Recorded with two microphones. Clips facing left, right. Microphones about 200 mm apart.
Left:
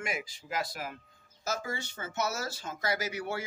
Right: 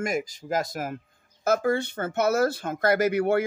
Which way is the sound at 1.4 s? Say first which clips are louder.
Right 13 dB; 60° right (ahead or behind).